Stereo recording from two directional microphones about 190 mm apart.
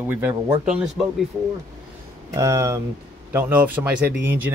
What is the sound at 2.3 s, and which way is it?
Speech, 15° right (ahead or behind).